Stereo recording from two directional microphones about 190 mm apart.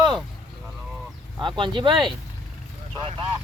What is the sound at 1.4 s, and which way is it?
Speech, 25° right (ahead or behind).